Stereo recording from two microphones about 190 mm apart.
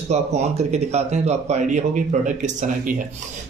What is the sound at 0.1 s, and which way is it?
A man's voice, 35° right (ahead or behind).